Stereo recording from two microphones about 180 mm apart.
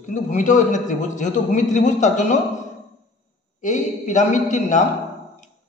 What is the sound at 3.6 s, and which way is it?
A man's voice, 45° left (ahead or behind).